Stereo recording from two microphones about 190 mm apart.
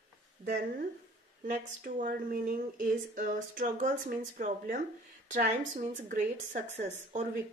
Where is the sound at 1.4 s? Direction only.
45° right (ahead or behind).